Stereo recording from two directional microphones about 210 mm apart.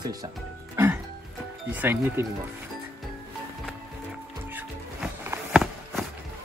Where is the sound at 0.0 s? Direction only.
15° right (ahead or behind).